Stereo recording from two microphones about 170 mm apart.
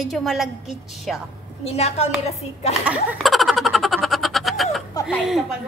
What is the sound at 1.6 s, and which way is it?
Speech, 40° left (ahead or behind).